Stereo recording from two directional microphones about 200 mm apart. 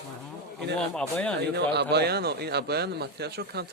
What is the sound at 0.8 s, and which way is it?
Speech, 5° left (ahead or behind).